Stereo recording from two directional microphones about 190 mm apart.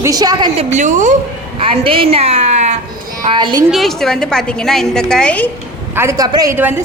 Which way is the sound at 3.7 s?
Centre (ahead or behind).